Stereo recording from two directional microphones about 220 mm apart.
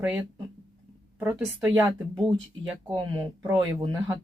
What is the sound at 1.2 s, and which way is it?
Speech, 5° right (ahead or behind).